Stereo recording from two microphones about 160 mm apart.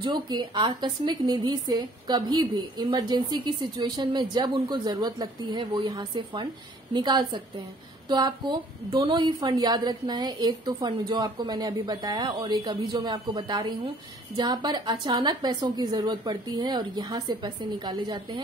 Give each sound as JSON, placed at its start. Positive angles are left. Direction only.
{"t": 0.0, "sound": "a woman's voice", "side_deg": -30}